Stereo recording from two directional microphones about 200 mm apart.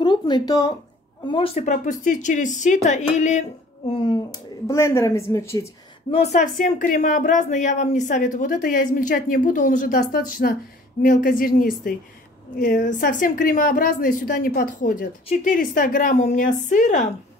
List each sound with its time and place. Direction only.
0.0 s a woman's voice: 20° left (ahead or behind)
6.0 s speech: 30° left (ahead or behind)